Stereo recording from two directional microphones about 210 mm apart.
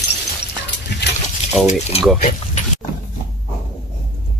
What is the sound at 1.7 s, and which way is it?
Speech, 30° left (ahead or behind).